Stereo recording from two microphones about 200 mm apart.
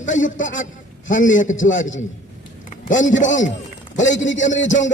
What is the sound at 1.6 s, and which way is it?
Speech, 70° left (ahead or behind).